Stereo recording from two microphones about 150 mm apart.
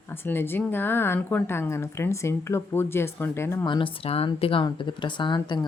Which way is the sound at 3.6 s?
35° left (ahead or behind).